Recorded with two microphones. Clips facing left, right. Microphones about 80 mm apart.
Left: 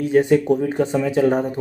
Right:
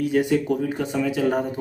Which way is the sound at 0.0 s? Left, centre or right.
Left.